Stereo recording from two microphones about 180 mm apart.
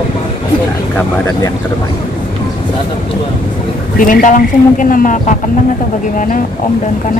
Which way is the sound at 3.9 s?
50° left (ahead or behind).